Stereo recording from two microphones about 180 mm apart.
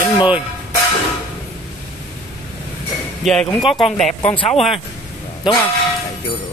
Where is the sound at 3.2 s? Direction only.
Centre (ahead or behind).